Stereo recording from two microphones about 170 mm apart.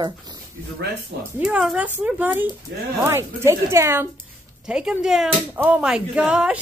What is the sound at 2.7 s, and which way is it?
Speech, 85° right.